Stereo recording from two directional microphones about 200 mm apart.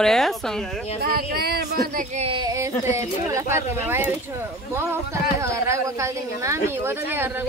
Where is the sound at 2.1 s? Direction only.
30° right (ahead or behind).